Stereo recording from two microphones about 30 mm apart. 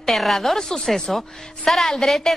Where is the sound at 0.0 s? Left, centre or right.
Centre.